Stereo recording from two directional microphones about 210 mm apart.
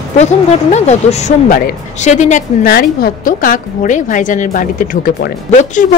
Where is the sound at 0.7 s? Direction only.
30° left (ahead or behind).